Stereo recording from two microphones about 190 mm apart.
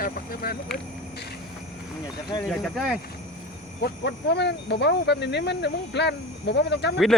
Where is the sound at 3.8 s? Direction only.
60° left (ahead or behind).